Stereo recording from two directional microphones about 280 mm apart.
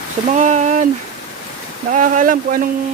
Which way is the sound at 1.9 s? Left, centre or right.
Right.